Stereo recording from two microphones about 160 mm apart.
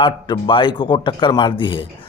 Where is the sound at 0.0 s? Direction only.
30° left (ahead or behind).